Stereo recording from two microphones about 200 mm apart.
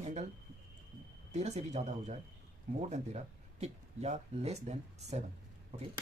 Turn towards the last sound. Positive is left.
turn(degrees=-35)  # may be behind; listen again after turning